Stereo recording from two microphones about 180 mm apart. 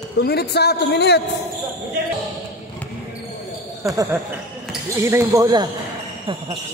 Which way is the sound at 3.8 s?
15° right (ahead or behind).